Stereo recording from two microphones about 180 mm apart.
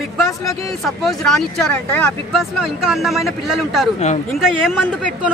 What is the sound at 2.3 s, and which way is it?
Speech, centre (ahead or behind).